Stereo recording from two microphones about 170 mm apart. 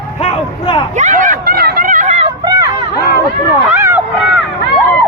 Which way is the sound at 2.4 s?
25° right (ahead or behind).